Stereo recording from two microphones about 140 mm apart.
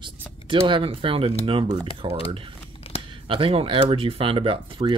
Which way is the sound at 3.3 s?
40° right (ahead or behind).